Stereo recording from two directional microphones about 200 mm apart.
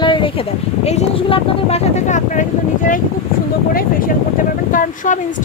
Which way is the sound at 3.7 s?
45° left (ahead or behind).